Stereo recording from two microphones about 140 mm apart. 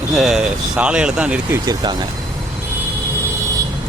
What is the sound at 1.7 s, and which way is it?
Speech, 30° right (ahead or behind).